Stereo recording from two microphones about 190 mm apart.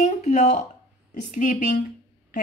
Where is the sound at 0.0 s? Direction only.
40° left (ahead or behind).